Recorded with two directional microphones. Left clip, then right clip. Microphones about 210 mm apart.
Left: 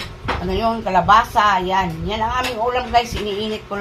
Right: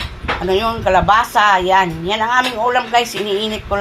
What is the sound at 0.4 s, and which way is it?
A woman's voice, 40° right (ahead or behind).